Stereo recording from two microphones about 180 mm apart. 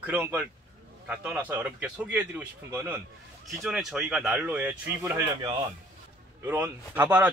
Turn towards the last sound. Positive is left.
turn(degrees=-10)  # may be behind; listen again after turning